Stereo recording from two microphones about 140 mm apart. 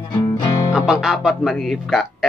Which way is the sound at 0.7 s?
5° right (ahead or behind).